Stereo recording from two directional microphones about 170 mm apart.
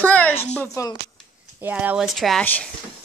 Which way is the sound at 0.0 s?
10° left (ahead or behind).